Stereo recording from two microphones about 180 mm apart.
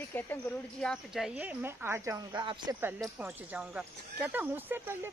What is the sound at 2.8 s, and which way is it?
Speech, 10° right (ahead or behind).